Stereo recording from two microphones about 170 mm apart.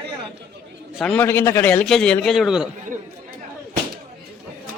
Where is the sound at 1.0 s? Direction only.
10° left (ahead or behind).